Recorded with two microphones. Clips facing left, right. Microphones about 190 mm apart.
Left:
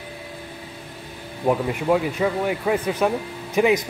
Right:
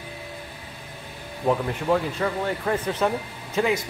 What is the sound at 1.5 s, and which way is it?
Speech, 10° left (ahead or behind).